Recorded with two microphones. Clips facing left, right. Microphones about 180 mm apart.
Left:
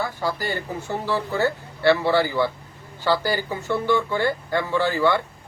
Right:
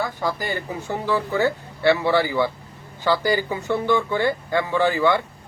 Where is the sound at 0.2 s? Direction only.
15° right (ahead or behind).